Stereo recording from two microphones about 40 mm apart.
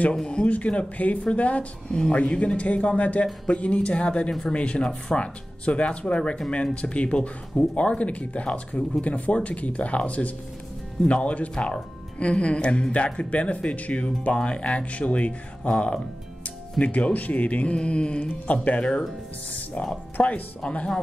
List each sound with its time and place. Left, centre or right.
0.1 s speech: left
0.5 s speech: left
1.9 s speech: centre
2.1 s speech: left
15.7 s speech: left
16.8 s speech: left
17.8 s speech: left
18.3 s speech: left
18.8 s speech: centre
20.2 s speech: left